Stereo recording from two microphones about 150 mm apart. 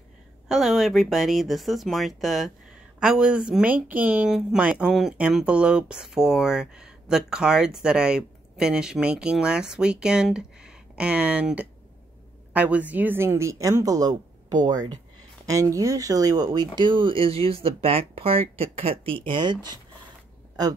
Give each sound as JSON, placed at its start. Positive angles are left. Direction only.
{"t": 0.5, "sound": "a woman's voice", "side_deg": 0}